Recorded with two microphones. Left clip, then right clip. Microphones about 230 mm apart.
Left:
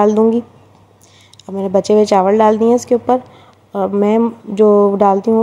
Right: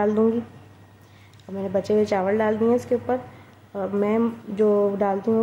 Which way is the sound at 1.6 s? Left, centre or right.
Left.